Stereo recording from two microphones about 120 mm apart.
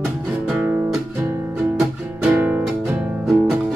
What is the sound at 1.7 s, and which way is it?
Music, 10° right (ahead or behind).